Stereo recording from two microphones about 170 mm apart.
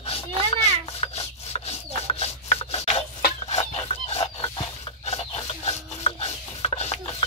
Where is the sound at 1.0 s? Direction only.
35° left (ahead or behind).